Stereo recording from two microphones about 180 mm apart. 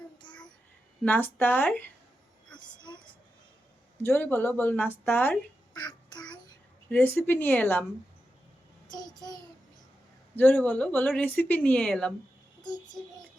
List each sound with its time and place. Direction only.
0.2 s child singing: 25° left (ahead or behind)
1.0 s speech: 10° left (ahead or behind)
4.0 s speech: 10° left (ahead or behind)
5.7 s child singing: 25° left (ahead or behind)
6.9 s speech: 10° left (ahead or behind)
8.9 s child singing: 20° left (ahead or behind)
10.3 s speech: 10° left (ahead or behind)
12.6 s child singing: 25° left (ahead or behind)